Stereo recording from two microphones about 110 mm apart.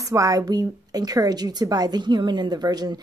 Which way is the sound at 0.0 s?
30° right (ahead or behind).